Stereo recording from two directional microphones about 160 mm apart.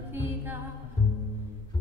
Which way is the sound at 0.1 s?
10° right (ahead or behind).